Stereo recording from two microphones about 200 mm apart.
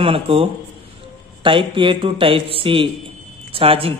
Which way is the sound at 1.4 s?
25° right (ahead or behind).